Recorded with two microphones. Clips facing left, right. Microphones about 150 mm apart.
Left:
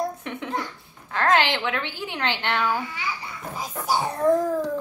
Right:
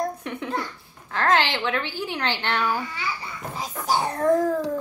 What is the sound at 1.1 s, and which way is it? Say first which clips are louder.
A woman's voice: left 1 dB; 20° left (ahead or behind).